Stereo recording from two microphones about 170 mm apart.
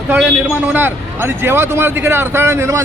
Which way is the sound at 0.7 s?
10° right (ahead or behind).